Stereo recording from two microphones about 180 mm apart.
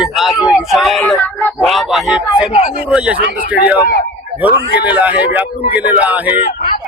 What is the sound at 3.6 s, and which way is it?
Speech, 55° left (ahead or behind).